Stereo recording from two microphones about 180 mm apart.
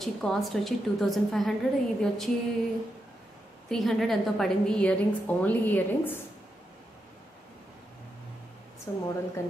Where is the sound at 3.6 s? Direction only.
Centre (ahead or behind).